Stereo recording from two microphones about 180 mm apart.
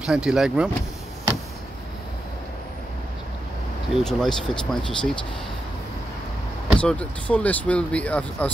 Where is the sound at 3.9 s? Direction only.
Centre (ahead or behind).